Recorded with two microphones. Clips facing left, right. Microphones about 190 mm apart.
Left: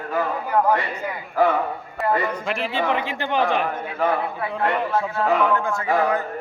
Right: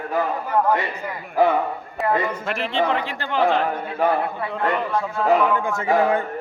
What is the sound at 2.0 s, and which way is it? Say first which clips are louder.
Speech: even; centre (ahead or behind).